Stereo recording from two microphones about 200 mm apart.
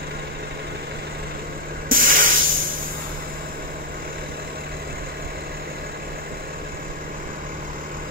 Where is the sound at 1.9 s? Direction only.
45° right (ahead or behind).